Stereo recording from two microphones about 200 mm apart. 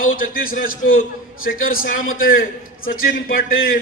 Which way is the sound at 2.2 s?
45° left (ahead or behind).